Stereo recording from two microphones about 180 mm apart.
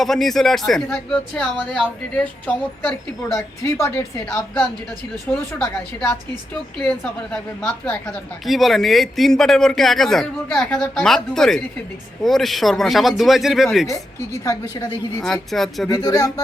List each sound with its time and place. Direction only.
0.0 s speech: centre (ahead or behind)
3.2 s speech: 15° left (ahead or behind)
5.3 s speech: centre (ahead or behind)
14.4 s a woman's voice: 20° left (ahead or behind)
15.2 s speech: centre (ahead or behind)
15.9 s a woman's voice: 20° left (ahead or behind)